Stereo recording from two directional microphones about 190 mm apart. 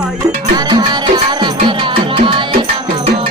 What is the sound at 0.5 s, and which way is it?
Music, 20° right (ahead or behind).